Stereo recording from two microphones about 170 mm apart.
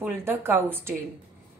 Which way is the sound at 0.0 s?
15° right (ahead or behind).